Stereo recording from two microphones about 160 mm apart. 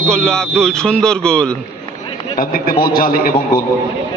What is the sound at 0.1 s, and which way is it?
Speech, 5° left (ahead or behind).